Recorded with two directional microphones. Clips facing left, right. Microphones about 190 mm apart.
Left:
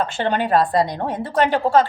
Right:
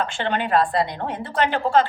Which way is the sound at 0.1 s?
40° left (ahead or behind).